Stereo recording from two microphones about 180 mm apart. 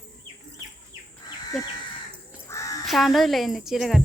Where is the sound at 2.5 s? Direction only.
15° left (ahead or behind).